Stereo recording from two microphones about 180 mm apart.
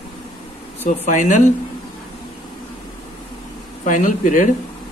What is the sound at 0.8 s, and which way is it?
Speech, 45° left (ahead or behind).